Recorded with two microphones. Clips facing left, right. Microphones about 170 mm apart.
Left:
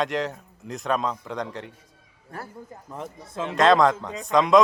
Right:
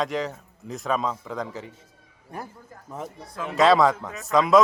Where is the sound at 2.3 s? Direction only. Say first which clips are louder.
Right 1 dB; 15° right (ahead or behind).